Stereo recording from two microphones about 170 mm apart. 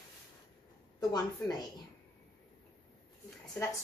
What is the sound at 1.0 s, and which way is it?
Speech, 25° left (ahead or behind).